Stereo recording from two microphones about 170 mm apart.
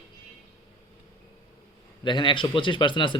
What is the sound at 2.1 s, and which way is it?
Speech, 30° left (ahead or behind).